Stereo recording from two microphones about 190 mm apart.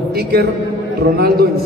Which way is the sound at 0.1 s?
55° right (ahead or behind).